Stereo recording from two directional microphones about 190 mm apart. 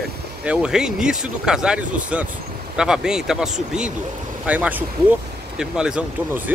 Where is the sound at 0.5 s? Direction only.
5° right (ahead or behind).